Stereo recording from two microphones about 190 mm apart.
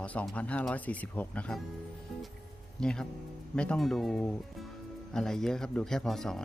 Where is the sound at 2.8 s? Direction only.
5° left (ahead or behind).